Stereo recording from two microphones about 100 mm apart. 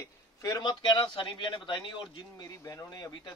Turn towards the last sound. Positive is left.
turn(degrees=40)  # may be behind; listen again after turning